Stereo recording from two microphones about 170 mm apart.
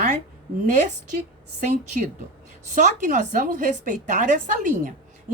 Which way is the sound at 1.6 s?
45° right (ahead or behind).